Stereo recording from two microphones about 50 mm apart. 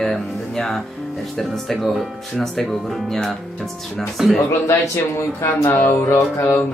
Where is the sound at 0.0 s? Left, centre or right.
Centre.